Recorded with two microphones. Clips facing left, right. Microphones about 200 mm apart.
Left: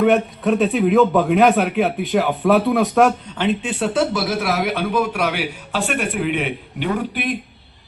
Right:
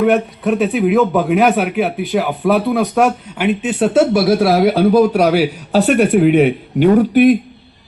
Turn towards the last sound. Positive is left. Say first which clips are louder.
# right 13 dB
turn(degrees=-45)  # may be behind; listen again after turning